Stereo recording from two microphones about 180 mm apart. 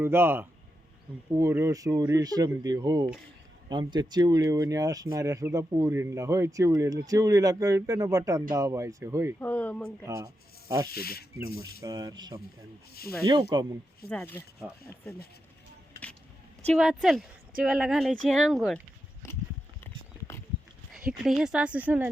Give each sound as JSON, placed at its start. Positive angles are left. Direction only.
{"t": 0.0, "sound": "speech", "side_deg": -10}
{"t": 9.4, "sound": "speech", "side_deg": 10}
{"t": 10.8, "sound": "speech", "side_deg": 60}
{"t": 11.8, "sound": "speech", "side_deg": -20}
{"t": 12.9, "sound": "speech", "side_deg": 60}
{"t": 13.2, "sound": "speech", "side_deg": -25}
{"t": 14.1, "sound": "speech", "side_deg": 10}
{"t": 14.6, "sound": "speech", "side_deg": -10}
{"t": 15.9, "sound": "vehicle", "side_deg": 10}
{"t": 16.7, "sound": "speech", "side_deg": 0}
{"t": 19.8, "sound": "a sound", "side_deg": 15}
{"t": 20.9, "sound": "speech", "side_deg": 0}